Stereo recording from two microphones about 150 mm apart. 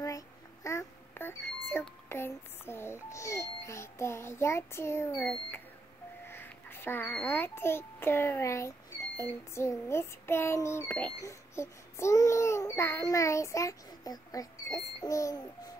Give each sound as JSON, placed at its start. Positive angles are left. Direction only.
{"t": 0.7, "sound": "a child's voice", "side_deg": 15}
{"t": 11.2, "sound": "baby cry", "side_deg": 20}